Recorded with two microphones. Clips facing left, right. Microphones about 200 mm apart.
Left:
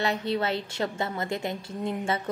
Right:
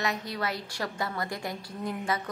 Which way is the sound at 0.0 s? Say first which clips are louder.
Left 5 dB; 30° left (ahead or behind).